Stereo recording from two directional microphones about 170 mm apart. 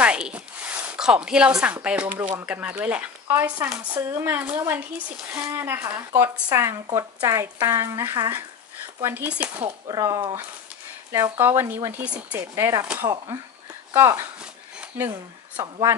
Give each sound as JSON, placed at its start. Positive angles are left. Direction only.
{"t": 0.0, "sound": "a sound", "side_deg": -5}
{"t": 2.4, "sound": "speech", "side_deg": -10}
{"t": 9.6, "sound": "speech", "side_deg": -25}
{"t": 15.5, "sound": "speech", "side_deg": -25}